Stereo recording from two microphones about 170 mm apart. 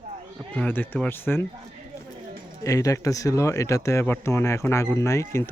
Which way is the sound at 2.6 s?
20° left (ahead or behind).